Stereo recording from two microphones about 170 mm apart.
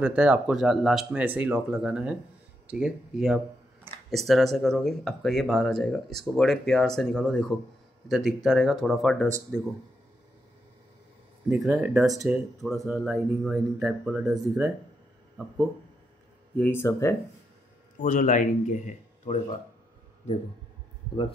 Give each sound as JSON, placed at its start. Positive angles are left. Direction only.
{"t": 0.0, "sound": "speech", "side_deg": -5}
{"t": 11.4, "sound": "speech", "side_deg": -5}
{"t": 16.5, "sound": "speech", "side_deg": 10}
{"t": 17.9, "sound": "speech", "side_deg": 50}